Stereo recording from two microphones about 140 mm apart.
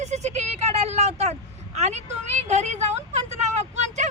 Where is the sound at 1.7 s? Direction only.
55° right (ahead or behind).